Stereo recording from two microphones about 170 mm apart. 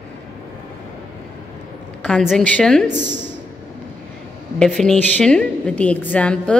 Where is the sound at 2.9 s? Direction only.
45° right (ahead or behind).